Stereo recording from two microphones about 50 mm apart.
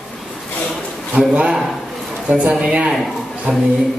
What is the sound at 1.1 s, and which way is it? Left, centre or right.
A man's voice, right.